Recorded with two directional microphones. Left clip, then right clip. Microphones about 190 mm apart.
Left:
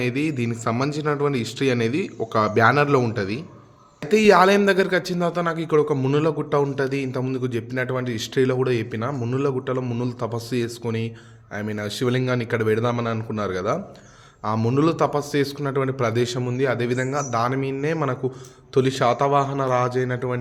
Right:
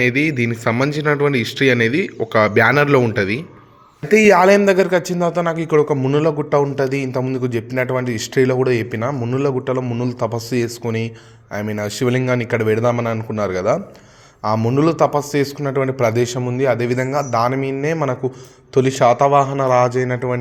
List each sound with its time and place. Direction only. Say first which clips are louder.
0.0 s speech: right 8 dB; 15° right (ahead or behind)
17.2 s speech: right 7 dB; 15° right (ahead or behind)